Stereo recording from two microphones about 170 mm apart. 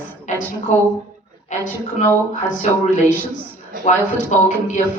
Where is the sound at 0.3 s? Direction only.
45° left (ahead or behind).